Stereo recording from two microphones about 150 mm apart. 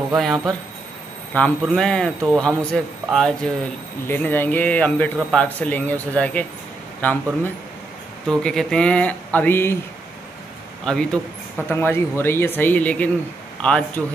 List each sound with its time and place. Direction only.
0.1 s a man's voice: centre (ahead or behind)
4.1 s speech: 15° left (ahead or behind)
8.3 s speech: 5° left (ahead or behind)
10.9 s speech: 5° left (ahead or behind)